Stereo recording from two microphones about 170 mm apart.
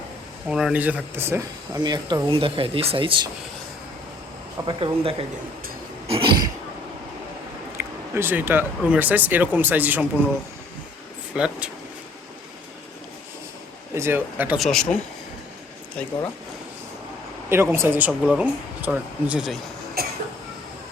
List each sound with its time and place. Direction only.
0.4 s speech: 5° right (ahead or behind); by 3.2 s 30° right (ahead or behind)
4.6 s speech: 30° right (ahead or behind)
7.8 s speech: 10° right (ahead or behind)
11.3 s speech: 5° right (ahead or behind)
13.9 s speech: 15° right (ahead or behind)
14.6 s speech: 5° left (ahead or behind)
17.5 s speech: 15° right (ahead or behind)
20.0 s a sound: 65° right (ahead or behind)